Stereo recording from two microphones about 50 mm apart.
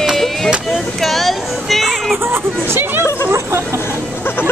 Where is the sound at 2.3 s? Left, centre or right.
Right.